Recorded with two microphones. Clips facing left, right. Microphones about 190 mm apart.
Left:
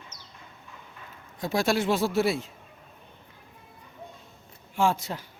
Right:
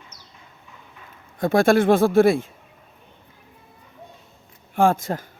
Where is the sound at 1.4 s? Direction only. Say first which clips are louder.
Right 9 dB; 55° right (ahead or behind).